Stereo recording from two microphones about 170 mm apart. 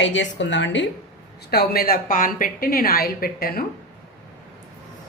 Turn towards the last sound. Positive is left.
turn(degrees=60)  # may be behind; listen again after turning